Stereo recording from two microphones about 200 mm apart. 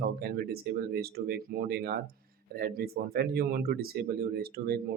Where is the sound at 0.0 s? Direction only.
50° right (ahead or behind).